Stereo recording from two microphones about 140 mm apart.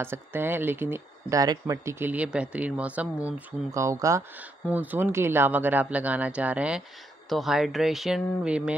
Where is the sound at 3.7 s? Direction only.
20° right (ahead or behind).